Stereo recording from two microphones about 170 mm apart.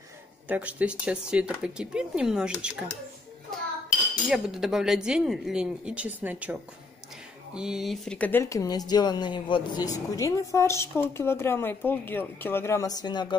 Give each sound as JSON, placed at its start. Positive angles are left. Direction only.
{"t": 0.5, "sound": "speech", "side_deg": -10}
{"t": 4.3, "sound": "speech", "side_deg": 0}